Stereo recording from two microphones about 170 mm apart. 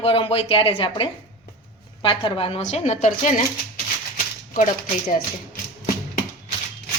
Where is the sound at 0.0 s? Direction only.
35° left (ahead or behind).